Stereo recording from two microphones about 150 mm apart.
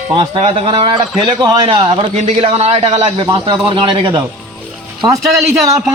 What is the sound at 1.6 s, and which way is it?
A man's voice, 40° right (ahead or behind).